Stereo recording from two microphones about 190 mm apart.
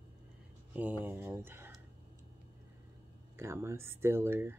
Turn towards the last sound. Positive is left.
turn(degrees=-15)  # may be behind; listen again after turning